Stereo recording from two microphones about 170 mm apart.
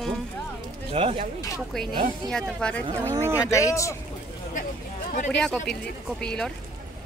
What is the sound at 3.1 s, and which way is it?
Speech, 15° right (ahead or behind).